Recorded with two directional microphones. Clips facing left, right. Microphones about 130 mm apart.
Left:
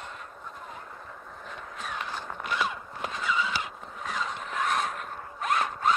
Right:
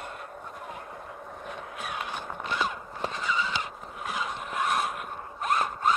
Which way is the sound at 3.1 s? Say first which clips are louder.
Left 2 dB; centre (ahead or behind).